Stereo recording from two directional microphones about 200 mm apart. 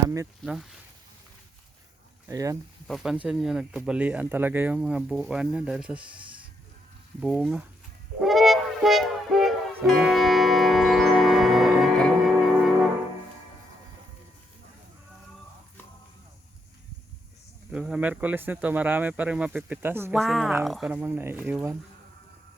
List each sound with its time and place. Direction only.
0.4 s speech: centre (ahead or behind)
2.2 s speech: 15° right (ahead or behind)
2.8 s speech: centre (ahead or behind)
7.2 s speech: 5° right (ahead or behind)
8.2 s music: centre (ahead or behind)
17.7 s speech: 5° right (ahead or behind)
20.1 s speech: centre (ahead or behind)